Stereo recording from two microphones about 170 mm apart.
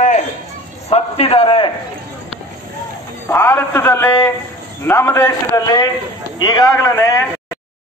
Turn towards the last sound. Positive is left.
turn(degrees=20)  # may be behind; listen again after turning